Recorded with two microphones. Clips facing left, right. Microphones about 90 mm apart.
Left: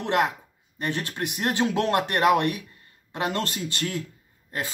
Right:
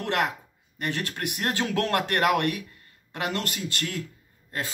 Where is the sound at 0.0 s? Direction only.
20° left (ahead or behind).